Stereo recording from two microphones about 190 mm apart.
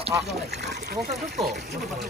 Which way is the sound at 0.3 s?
65° right (ahead or behind).